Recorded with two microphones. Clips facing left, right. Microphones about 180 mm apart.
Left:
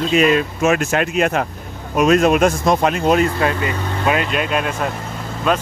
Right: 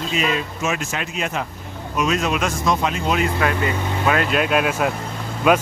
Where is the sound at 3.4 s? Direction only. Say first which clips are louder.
Left 1 dB; 25° left (ahead or behind).